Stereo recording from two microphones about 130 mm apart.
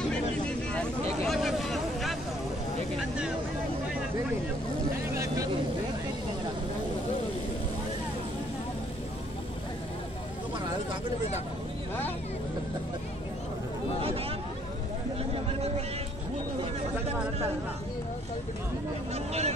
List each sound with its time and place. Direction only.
0.1 s vehicle: 10° left (ahead or behind)
5.1 s vehicle: 25° right (ahead or behind)
19.1 s a sound: 55° right (ahead or behind)